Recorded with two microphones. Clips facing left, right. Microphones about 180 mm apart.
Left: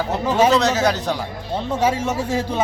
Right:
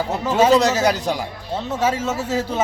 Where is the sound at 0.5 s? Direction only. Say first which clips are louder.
Right 2 dB; 10° right (ahead or behind).